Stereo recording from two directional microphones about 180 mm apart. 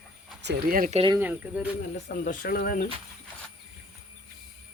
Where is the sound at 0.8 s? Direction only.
35° right (ahead or behind).